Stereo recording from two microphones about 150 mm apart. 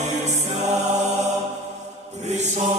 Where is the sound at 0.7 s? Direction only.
50° right (ahead or behind).